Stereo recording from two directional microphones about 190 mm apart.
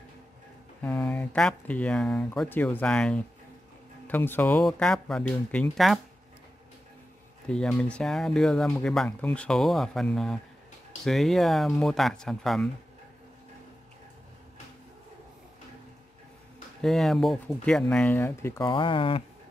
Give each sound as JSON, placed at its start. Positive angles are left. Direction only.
{"t": 0.8, "sound": "speech", "side_deg": 5}
{"t": 7.4, "sound": "speech", "side_deg": 5}
{"t": 16.8, "sound": "speech", "side_deg": 0}
{"t": 18.7, "sound": "speech", "side_deg": 25}